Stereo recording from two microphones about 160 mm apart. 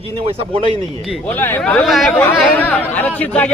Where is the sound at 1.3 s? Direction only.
10° left (ahead or behind).